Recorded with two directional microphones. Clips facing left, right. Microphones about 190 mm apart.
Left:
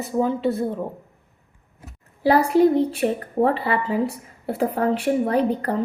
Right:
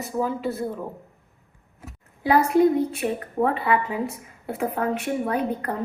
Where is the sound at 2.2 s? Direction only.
35° left (ahead or behind).